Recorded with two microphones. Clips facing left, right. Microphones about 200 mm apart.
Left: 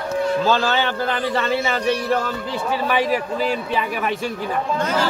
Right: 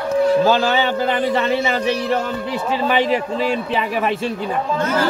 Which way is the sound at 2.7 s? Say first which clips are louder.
Right 2 dB; 25° right (ahead or behind).